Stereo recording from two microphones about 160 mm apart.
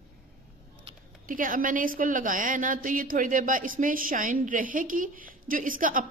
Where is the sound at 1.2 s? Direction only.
60° right (ahead or behind).